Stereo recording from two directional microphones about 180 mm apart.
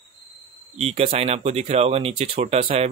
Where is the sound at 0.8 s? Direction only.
35° right (ahead or behind).